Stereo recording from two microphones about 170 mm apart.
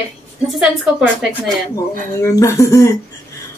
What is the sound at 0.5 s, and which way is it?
Speech, 5° right (ahead or behind).